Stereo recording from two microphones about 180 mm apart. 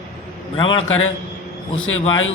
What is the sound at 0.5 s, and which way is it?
Speech, 30° left (ahead or behind).